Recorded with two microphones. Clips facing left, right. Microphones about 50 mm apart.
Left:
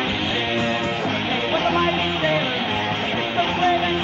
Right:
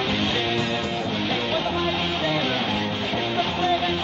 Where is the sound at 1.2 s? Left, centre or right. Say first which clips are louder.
Left 2 dB; left.